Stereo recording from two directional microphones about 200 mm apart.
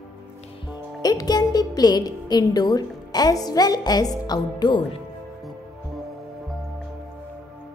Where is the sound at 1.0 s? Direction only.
20° left (ahead or behind).